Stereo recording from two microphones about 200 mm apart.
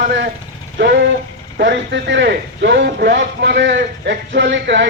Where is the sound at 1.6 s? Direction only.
55° right (ahead or behind).